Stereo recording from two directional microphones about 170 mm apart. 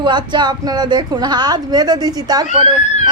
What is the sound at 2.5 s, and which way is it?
Speech, 45° left (ahead or behind).